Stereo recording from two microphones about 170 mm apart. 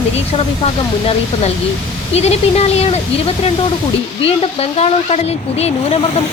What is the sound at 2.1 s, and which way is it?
Speech, 40° left (ahead or behind).